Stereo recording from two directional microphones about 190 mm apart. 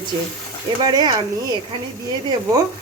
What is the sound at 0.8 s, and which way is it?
Speech, 20° right (ahead or behind).